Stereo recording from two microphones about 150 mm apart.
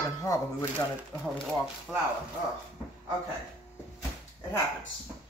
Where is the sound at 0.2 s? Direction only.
20° left (ahead or behind).